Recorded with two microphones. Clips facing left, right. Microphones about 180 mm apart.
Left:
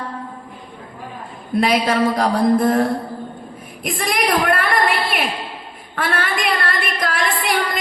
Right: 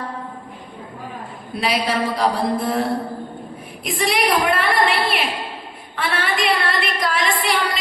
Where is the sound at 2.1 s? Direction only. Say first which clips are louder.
Left 4 dB; 45° left (ahead or behind).